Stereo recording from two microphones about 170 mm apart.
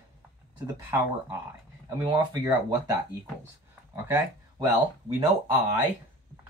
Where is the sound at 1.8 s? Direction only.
20° right (ahead or behind).